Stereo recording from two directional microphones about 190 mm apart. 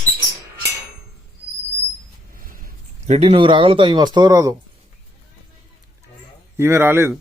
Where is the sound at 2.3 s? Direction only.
45° right (ahead or behind).